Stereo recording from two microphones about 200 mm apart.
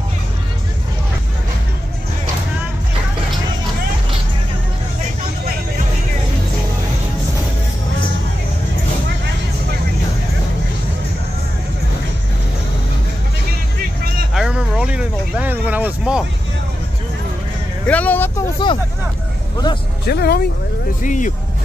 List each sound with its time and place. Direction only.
14.3 s a sound: 5° right (ahead or behind)
17.8 s vehicle: 5° left (ahead or behind)
18.6 s vehicle: 20° left (ahead or behind)
20.1 s music: 55° left (ahead or behind)
21.0 s music: 40° left (ahead or behind)